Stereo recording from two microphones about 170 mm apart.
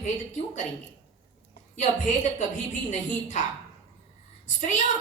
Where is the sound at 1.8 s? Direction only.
45° left (ahead or behind).